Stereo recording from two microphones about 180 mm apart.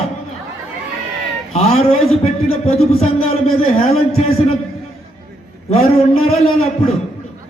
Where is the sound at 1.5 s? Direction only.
35° left (ahead or behind).